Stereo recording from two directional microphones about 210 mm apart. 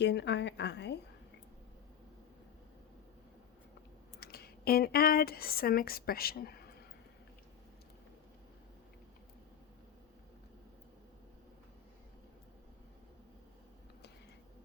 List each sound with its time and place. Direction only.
0.0 s a woman's voice: 55° left (ahead or behind)
4.2 s speech: 45° left (ahead or behind)